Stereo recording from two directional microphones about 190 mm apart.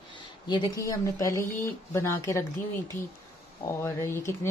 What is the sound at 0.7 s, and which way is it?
Speech, 15° left (ahead or behind).